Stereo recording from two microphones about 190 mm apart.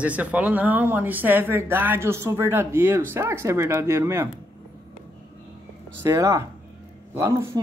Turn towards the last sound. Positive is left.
turn(degrees=-15)  # may be behind; listen again after turning